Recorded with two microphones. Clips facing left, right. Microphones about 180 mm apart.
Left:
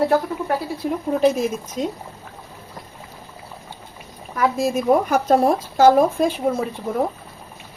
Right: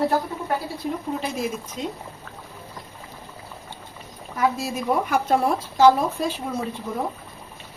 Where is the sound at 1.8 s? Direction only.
45° left (ahead or behind).